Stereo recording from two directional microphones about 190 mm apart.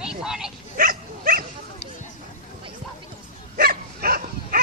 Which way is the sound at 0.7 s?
45° right (ahead or behind).